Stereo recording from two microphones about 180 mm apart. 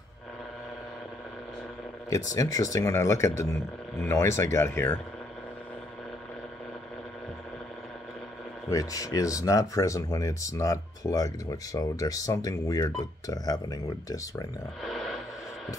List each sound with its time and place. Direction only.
2.3 s speech: 20° left (ahead or behind)
8.6 s speech: 20° left (ahead or behind)
14.8 s a sound: centre (ahead or behind)